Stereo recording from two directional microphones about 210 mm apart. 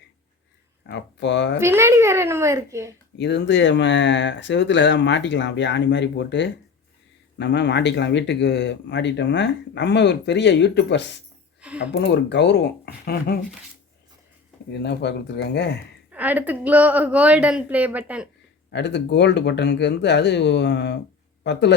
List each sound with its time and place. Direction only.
0.9 s speech: 55° left (ahead or behind)
1.5 s a woman's voice: 10° right (ahead or behind)
3.2 s speech: 55° left (ahead or behind)
11.6 s speech: 5° right (ahead or behind)
11.9 s speech: 55° left (ahead or behind)
14.7 s speech: 55° left (ahead or behind)
16.1 s a woman's voice: 10° right (ahead or behind)
18.7 s speech: 55° left (ahead or behind)